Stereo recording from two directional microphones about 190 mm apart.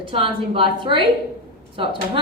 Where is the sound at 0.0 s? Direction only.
25° right (ahead or behind).